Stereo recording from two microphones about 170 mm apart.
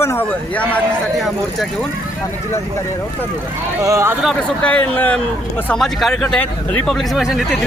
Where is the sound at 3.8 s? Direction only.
15° right (ahead or behind).